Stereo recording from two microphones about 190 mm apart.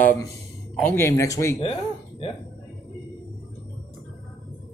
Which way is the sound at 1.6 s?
30° left (ahead or behind).